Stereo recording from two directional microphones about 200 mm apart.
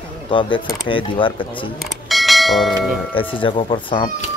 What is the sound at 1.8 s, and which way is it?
Bell, centre (ahead or behind).